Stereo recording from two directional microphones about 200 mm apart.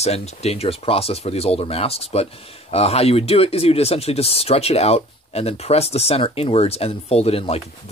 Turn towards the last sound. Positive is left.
turn(degrees=30)  # may be behind; listen again after turning